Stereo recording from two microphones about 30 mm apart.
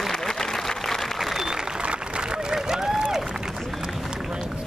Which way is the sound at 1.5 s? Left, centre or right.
Right.